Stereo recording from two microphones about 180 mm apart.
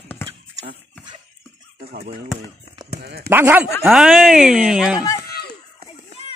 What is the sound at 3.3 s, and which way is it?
Speech, 10° right (ahead or behind).